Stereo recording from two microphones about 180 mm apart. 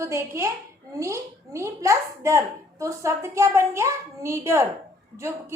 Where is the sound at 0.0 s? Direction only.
15° right (ahead or behind).